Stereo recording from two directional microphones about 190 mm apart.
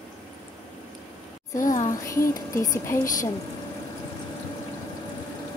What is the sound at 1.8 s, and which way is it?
A woman's voice, 15° left (ahead or behind).